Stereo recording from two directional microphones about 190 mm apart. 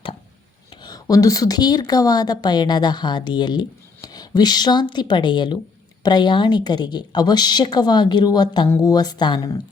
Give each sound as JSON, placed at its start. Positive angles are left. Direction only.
{"t": 0.7, "sound": "speech", "side_deg": 20}